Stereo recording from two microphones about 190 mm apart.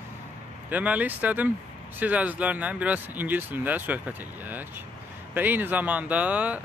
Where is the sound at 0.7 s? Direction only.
10° right (ahead or behind).